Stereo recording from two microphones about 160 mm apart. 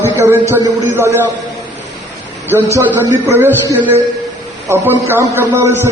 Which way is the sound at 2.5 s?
15° right (ahead or behind).